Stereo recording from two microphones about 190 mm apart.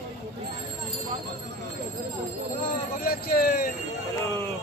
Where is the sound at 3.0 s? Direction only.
50° left (ahead or behind).